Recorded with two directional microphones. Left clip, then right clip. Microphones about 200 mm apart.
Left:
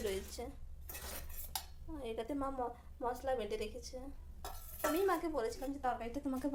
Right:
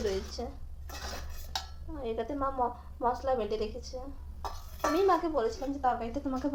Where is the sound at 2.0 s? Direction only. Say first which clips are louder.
Right 7 dB; 25° left (ahead or behind).